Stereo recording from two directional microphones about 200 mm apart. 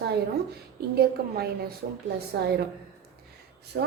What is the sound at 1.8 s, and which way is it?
Speech, 50° right (ahead or behind).